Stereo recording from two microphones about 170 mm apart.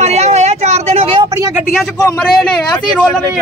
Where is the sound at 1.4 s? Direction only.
15° right (ahead or behind).